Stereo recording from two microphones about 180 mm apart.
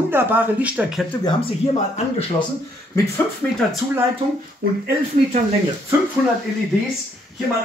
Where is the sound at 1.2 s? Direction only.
30° left (ahead or behind).